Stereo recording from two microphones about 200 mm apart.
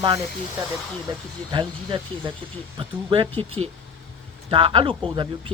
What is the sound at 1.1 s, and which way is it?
Speech, 20° right (ahead or behind).